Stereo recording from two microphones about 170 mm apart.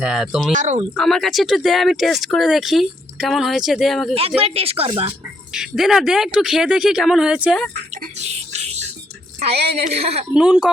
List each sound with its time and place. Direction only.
0.0 s speech: centre (ahead or behind)
0.5 s speech: 45° right (ahead or behind)
0.9 s speech: centre (ahead or behind)
4.4 s a woman's voice: 35° right (ahead or behind)
5.5 s speech: 5° right (ahead or behind)
8.2 s a sound: 40° right (ahead or behind)
9.4 s a woman's voice: 35° right (ahead or behind)
10.3 s speech: 5° right (ahead or behind)